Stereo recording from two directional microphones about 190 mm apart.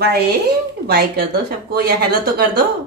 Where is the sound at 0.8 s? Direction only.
55° right (ahead or behind).